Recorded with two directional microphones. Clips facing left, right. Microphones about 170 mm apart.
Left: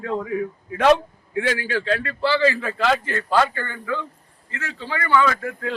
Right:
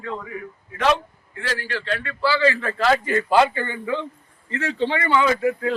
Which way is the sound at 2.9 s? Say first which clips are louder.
Right 3 dB; 5° right (ahead or behind).